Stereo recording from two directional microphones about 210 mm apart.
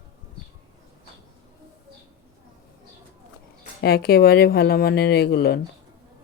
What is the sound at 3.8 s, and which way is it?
Speech, 50° left (ahead or behind).